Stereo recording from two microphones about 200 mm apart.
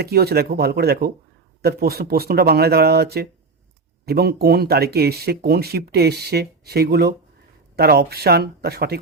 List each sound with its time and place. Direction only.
0.0 s speech: 50° right (ahead or behind)